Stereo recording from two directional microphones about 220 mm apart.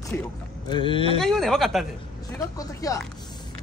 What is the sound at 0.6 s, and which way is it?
Speech, 20° left (ahead or behind).